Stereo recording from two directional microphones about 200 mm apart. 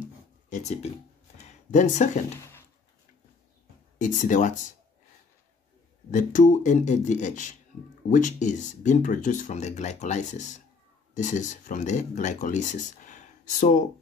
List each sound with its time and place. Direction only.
0.5 s speech: 35° left (ahead or behind)
4.0 s speech: 40° left (ahead or behind)
6.1 s speech: 40° left (ahead or behind)